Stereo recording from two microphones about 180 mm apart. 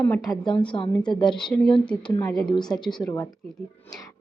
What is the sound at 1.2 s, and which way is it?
Speech, 5° left (ahead or behind).